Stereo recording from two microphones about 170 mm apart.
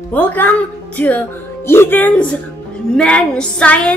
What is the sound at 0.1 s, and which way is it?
Speech, 10° left (ahead or behind).